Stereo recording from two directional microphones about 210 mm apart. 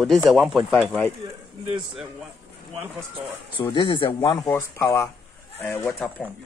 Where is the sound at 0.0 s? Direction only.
Centre (ahead or behind).